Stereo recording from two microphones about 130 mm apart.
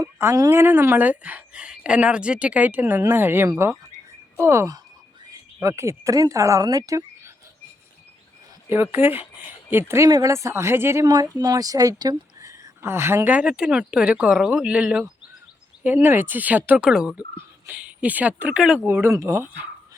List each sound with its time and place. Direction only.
0.2 s speech: 25° right (ahead or behind)
8.7 s speech: 15° right (ahead or behind)
11.1 s speech: 30° right (ahead or behind)